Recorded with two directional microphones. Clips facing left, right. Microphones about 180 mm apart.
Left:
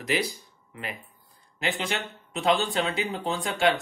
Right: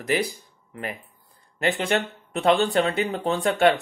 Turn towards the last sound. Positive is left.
turn(degrees=-60)  # may be behind; listen again after turning